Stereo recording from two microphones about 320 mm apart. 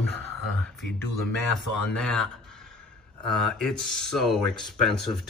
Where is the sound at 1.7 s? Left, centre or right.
Left.